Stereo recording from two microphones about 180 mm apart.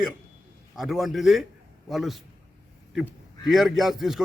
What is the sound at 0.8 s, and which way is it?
A man's voice, centre (ahead or behind).